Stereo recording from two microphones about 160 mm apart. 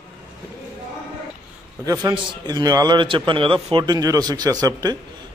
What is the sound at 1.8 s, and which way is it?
A man's voice, 25° right (ahead or behind).